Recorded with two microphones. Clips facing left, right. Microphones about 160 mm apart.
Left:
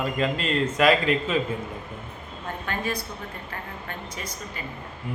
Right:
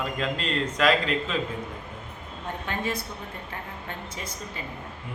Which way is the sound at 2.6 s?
25° right (ahead or behind).